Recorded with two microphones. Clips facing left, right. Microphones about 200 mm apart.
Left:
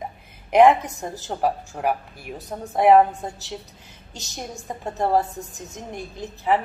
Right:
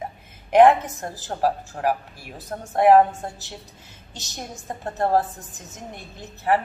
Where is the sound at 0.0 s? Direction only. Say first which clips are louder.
Even; centre (ahead or behind).